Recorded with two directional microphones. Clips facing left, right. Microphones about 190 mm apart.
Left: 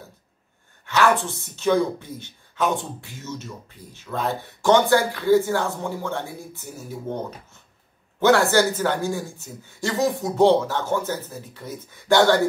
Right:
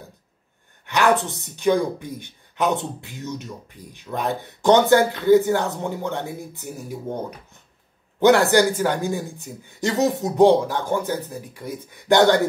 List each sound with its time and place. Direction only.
0.8 s speech: 15° right (ahead or behind)